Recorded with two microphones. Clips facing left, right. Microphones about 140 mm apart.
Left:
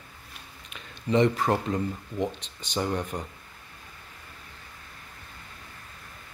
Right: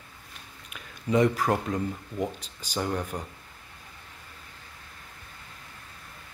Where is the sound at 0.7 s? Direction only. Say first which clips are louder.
Left 1 dB; 5° right (ahead or behind).